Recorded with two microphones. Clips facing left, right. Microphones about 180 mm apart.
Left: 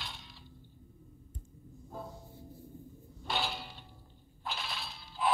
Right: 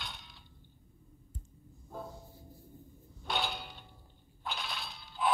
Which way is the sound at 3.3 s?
Centre (ahead or behind).